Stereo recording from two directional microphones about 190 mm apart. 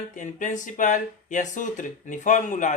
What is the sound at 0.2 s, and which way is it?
Speech, 40° left (ahead or behind).